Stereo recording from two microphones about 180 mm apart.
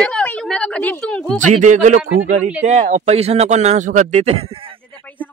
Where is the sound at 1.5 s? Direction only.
40° right (ahead or behind).